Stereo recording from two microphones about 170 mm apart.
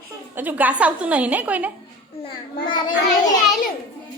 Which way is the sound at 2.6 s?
25° left (ahead or behind).